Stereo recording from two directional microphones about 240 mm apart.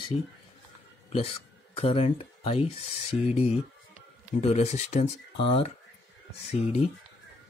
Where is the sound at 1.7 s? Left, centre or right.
Left.